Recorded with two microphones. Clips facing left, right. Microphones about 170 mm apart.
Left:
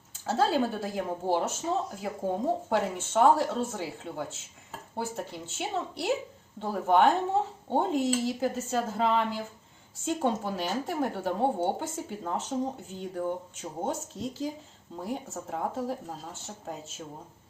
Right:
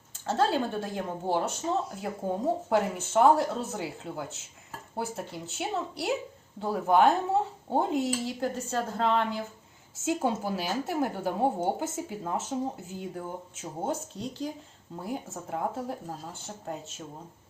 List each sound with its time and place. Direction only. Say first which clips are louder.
0.3 s speech: left 1 dB; 5° left (ahead or behind)